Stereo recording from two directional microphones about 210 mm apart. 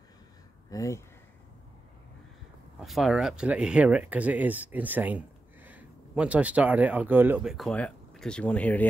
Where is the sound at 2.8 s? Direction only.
Centre (ahead or behind).